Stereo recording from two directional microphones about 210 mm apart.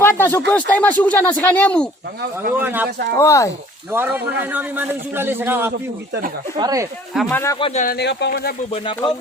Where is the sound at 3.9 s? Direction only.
10° right (ahead or behind).